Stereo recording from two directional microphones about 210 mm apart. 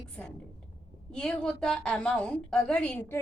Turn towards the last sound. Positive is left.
turn(degrees=5)  # may be behind; listen again after turning